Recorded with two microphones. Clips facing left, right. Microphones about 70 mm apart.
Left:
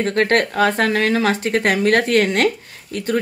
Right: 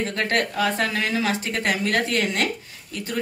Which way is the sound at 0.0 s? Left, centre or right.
Left.